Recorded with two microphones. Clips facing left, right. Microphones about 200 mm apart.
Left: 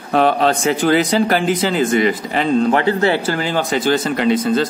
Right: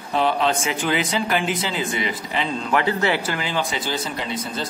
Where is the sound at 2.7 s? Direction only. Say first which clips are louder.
Left 5 dB; 30° left (ahead or behind); by 3.9 s 45° left (ahead or behind).